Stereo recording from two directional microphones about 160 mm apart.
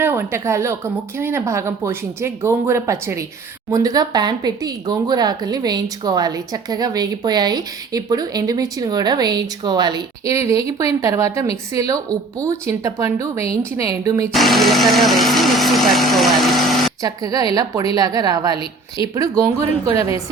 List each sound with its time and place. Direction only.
0.0 s a woman's voice: 15° right (ahead or behind)
14.3 s speech: centre (ahead or behind)
17.0 s speech: 25° right (ahead or behind)